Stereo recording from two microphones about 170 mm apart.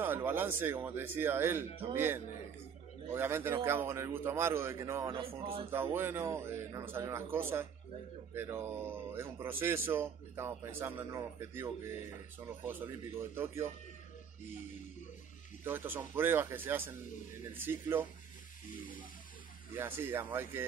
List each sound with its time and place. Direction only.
0.0 s a man's voice: 10° right (ahead or behind)
5.1 s speech: 30° right (ahead or behind)
5.7 s a man's voice: 15° right (ahead or behind)
15.6 s a man's voice: 10° right (ahead or behind)
19.7 s a man's voice: 15° right (ahead or behind)